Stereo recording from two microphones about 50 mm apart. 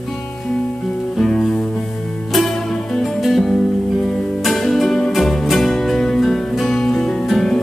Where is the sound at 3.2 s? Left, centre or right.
Centre.